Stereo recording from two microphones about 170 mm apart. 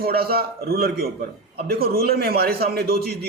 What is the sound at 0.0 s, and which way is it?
A man's voice, 65° right (ahead or behind).